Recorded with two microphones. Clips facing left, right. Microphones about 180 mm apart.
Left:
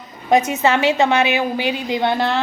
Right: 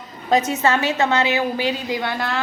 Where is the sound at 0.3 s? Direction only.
10° left (ahead or behind).